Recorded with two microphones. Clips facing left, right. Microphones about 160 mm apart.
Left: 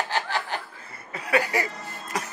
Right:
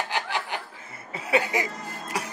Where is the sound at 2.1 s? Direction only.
10° right (ahead or behind).